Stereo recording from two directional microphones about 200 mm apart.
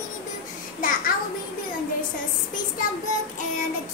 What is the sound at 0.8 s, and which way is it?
Speech, 45° left (ahead or behind).